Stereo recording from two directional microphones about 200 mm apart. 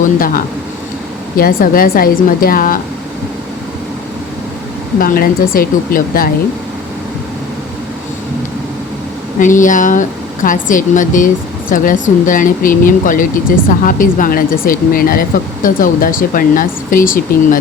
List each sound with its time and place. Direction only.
0.0 s speech: 45° left (ahead or behind)
4.9 s speech: 45° left (ahead or behind)
9.4 s speech: 40° left (ahead or behind)